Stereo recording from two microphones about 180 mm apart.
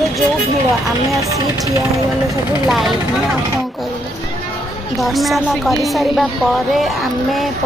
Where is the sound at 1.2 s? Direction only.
15° right (ahead or behind).